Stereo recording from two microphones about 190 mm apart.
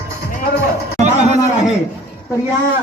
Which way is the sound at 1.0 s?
35° right (ahead or behind).